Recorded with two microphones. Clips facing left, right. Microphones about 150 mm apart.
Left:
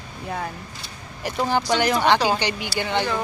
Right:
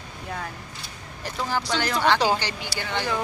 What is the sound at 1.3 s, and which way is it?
Speech, 20° left (ahead or behind).